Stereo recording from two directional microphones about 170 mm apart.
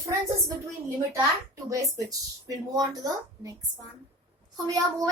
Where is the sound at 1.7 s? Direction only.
20° right (ahead or behind).